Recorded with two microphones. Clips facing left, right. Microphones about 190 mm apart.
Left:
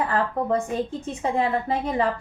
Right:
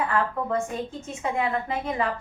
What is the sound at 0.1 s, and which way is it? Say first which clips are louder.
A woman's voice: left 2 dB; 35° left (ahead or behind).